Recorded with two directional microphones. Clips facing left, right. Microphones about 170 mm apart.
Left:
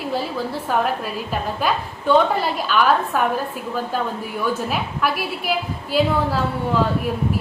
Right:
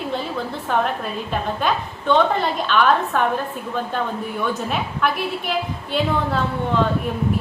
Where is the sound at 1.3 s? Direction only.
5° left (ahead or behind).